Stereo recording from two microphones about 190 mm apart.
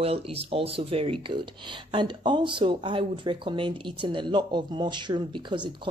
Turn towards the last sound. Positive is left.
turn(degrees=-25)  # may be behind; listen again after turning